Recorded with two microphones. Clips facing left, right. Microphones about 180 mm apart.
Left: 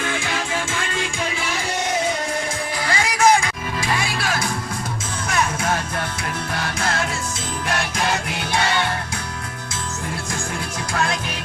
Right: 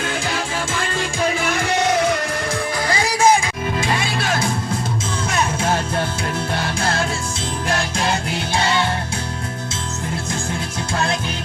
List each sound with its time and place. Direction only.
1.3 s music: 55° right (ahead or behind)
2.8 s music: 35° right (ahead or behind)
10.9 s music: 25° right (ahead or behind)